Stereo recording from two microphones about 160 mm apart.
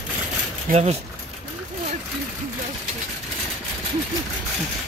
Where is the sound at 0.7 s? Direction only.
55° right (ahead or behind).